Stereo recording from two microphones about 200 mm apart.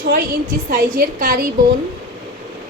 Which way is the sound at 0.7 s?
45° right (ahead or behind).